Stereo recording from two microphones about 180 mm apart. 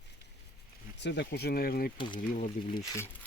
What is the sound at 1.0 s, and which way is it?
Speech, 75° left (ahead or behind).